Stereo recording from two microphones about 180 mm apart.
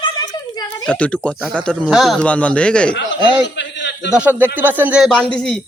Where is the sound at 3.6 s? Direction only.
75° left (ahead or behind).